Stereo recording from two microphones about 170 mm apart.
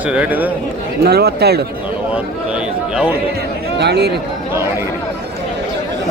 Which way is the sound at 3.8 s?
75° right (ahead or behind).